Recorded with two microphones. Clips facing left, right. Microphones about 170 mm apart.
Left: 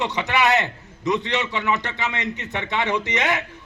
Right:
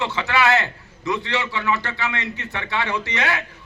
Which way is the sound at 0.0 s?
20° left (ahead or behind).